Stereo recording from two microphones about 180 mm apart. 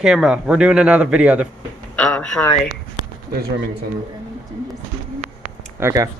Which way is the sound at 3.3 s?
60° right (ahead or behind).